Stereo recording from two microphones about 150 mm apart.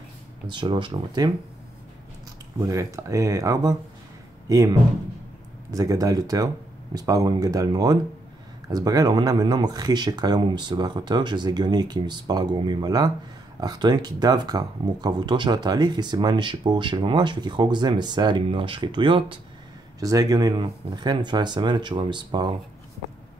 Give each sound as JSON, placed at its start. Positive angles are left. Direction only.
{"t": 0.5, "sound": "speech", "side_deg": -30}
{"t": 2.7, "sound": "speech", "side_deg": -20}
{"t": 5.7, "sound": "speech", "side_deg": -25}